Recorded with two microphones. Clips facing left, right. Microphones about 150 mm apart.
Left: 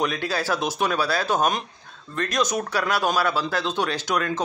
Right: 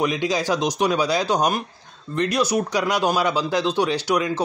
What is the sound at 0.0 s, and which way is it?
A man's voice, 15° right (ahead or behind).